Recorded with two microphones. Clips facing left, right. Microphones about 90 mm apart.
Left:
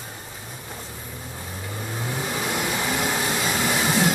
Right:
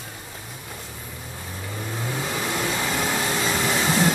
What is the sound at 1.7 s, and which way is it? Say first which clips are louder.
Vehicle: right 1 dB; 10° left (ahead or behind).